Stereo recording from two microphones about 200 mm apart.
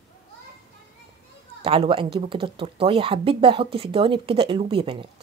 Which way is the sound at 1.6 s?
30° right (ahead or behind).